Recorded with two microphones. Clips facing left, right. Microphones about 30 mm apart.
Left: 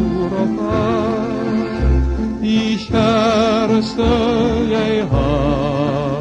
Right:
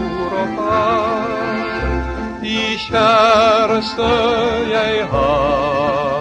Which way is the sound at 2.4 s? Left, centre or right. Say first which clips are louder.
Left 2 dB; right.